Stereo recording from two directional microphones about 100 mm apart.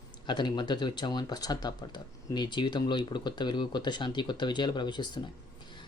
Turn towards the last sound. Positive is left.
turn(degrees=50)  # may be behind; listen again after turning